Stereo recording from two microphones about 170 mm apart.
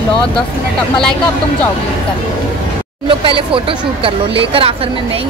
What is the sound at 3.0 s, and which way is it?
Speech, 30° right (ahead or behind).